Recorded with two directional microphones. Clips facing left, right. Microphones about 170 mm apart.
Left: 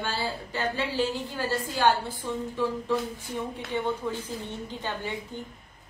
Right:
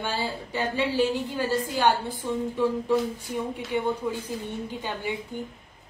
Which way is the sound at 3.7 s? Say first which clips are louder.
Right 2 dB; 10° right (ahead or behind).